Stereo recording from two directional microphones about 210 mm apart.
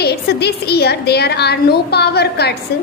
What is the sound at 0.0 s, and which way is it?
A woman's voice, 50° left (ahead or behind).